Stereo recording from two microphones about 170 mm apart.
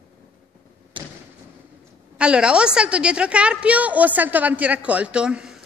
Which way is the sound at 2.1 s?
5° right (ahead or behind).